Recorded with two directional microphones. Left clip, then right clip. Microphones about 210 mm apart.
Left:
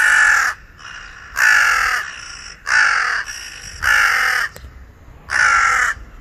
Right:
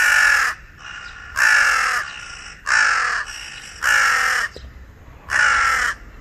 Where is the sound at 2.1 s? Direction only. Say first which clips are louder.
Left 1 dB; 30° left (ahead or behind).